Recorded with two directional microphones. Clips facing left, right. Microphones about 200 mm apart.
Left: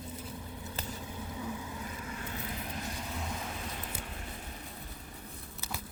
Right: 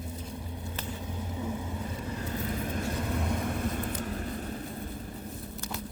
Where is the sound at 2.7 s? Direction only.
55° right (ahead or behind).